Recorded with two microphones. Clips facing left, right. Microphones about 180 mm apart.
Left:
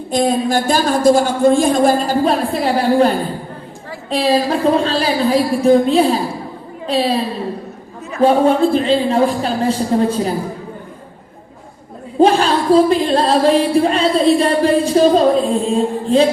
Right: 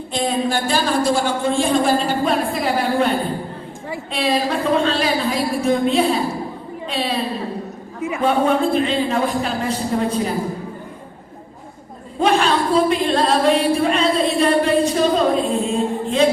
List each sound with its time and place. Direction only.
0.1 s a woman's voice: 40° left (ahead or behind)
4.1 s speech: 35° left (ahead or behind)
8.2 s speech: 35° left (ahead or behind)
12.2 s speech: 35° left (ahead or behind)